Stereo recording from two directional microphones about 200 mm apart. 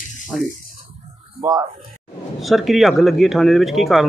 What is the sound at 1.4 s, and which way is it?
Speech, 15° right (ahead or behind).